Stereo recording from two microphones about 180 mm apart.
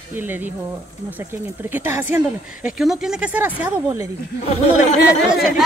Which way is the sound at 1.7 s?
10° right (ahead or behind).